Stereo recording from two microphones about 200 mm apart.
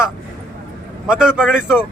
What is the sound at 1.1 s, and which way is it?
Speech, 5° right (ahead or behind).